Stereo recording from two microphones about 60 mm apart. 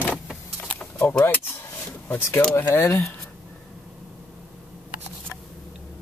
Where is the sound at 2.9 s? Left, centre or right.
Left.